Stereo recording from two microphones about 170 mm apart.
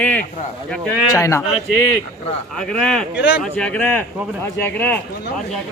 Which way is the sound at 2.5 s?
5° left (ahead or behind).